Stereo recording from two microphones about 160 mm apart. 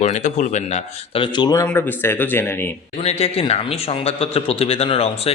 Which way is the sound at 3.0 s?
40° left (ahead or behind).